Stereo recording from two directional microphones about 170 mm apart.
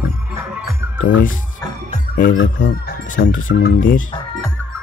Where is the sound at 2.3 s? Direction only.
90° left; by 3.9 s 60° left (ahead or behind).